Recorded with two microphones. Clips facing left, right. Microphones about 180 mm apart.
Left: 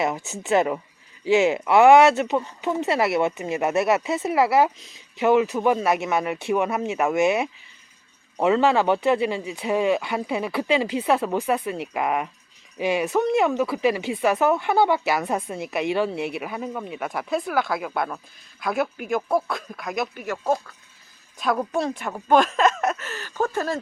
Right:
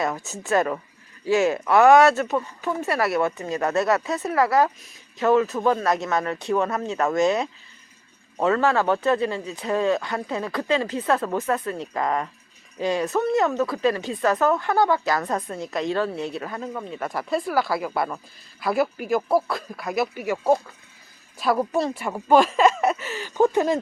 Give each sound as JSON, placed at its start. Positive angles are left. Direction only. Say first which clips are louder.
{"t": 0.3, "sound": "speech", "louder": "left 1 dB", "side_deg": 20}